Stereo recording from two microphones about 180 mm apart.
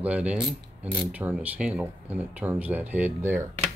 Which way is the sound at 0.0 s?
10° right (ahead or behind).